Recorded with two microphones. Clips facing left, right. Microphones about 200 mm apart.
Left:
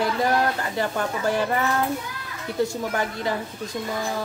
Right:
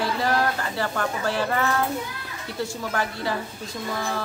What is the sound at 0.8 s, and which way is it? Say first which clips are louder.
Speech: left 1 dB; 15° left (ahead or behind).